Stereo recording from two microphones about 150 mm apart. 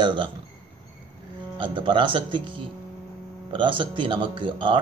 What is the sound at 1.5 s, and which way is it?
Speech, 35° right (ahead or behind).